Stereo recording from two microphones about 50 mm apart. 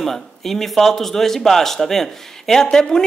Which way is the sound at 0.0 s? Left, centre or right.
Centre.